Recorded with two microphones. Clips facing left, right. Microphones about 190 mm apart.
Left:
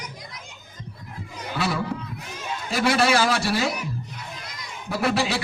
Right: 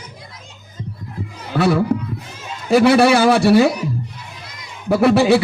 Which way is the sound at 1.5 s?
60° right (ahead or behind).